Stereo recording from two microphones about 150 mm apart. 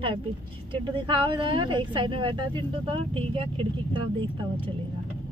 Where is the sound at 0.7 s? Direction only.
30° right (ahead or behind).